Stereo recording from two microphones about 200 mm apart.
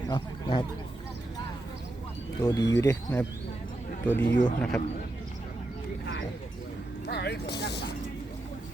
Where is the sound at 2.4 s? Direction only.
15° left (ahead or behind).